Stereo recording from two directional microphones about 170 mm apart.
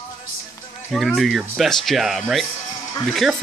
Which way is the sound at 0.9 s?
Centre (ahead or behind).